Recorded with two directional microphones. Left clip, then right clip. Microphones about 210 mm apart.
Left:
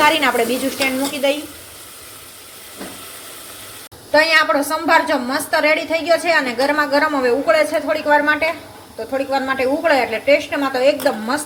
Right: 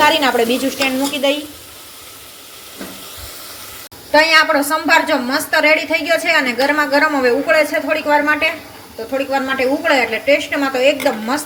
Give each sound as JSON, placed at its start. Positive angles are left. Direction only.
{"t": 0.0, "sound": "a woman's voice", "side_deg": 0}
{"t": 4.1, "sound": "a woman's voice", "side_deg": -5}